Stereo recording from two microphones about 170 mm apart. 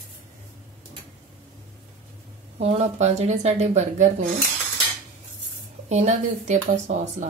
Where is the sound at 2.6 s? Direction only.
40° right (ahead or behind).